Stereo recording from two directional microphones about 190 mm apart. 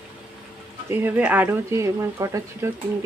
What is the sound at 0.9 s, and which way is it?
Speech, 10° right (ahead or behind).